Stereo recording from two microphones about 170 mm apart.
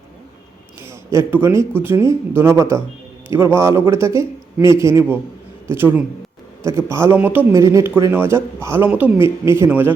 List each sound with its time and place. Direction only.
0.8 s speech: 15° right (ahead or behind)